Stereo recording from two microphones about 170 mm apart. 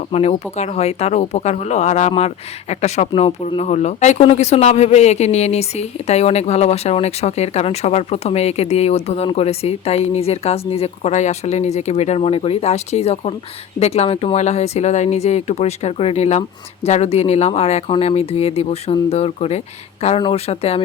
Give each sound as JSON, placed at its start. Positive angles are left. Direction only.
{"t": 0.1, "sound": "a man's voice", "side_deg": 40}